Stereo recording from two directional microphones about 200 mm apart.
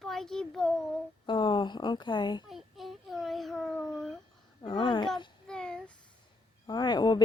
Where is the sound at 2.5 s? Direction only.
Centre (ahead or behind).